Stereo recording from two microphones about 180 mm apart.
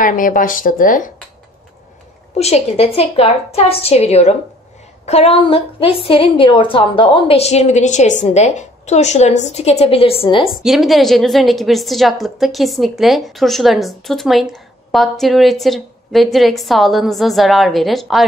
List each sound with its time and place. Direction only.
0.0 s a woman's voice: 50° left (ahead or behind)
2.3 s a woman's voice: 35° left (ahead or behind)
10.5 s a woman's voice: centre (ahead or behind)